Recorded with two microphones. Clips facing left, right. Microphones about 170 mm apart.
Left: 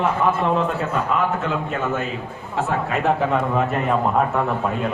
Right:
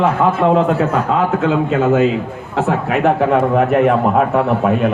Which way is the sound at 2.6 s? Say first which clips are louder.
Right 6 dB; 70° right (ahead or behind).